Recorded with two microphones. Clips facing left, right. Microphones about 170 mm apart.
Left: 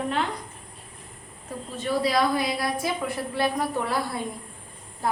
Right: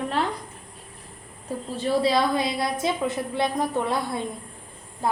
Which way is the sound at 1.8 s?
25° right (ahead or behind).